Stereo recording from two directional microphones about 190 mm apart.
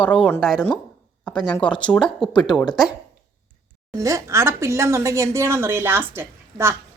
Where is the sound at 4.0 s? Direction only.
15° right (ahead or behind).